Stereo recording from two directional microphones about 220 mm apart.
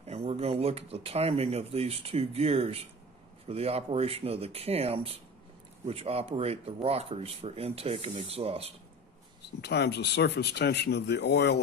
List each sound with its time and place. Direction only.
0.0 s speech: 30° right (ahead or behind)
9.6 s speech: 50° left (ahead or behind)